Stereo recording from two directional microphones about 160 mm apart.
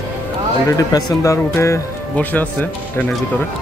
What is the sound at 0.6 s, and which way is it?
Speech, 20° left (ahead or behind).